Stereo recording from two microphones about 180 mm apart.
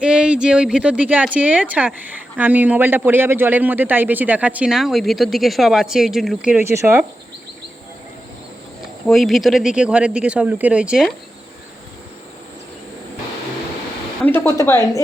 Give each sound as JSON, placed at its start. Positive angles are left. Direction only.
{"t": 0.0, "sound": "speech", "side_deg": -5}
{"t": 9.0, "sound": "speech", "side_deg": 0}
{"t": 14.3, "sound": "a woman's voice", "side_deg": 15}